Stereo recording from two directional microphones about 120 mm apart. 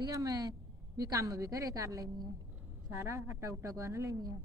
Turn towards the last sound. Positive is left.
turn(degrees=-25)  # may be behind; listen again after turning